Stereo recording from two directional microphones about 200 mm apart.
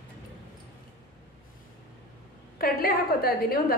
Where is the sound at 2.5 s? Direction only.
50° left (ahead or behind).